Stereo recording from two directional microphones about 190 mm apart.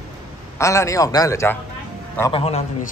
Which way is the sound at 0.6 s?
15° left (ahead or behind).